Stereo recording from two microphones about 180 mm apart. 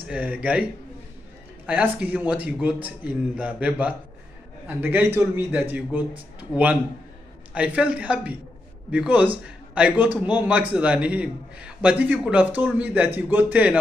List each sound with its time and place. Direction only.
0.1 s a man's voice: 10° right (ahead or behind)
1.7 s a man's voice: 10° right (ahead or behind)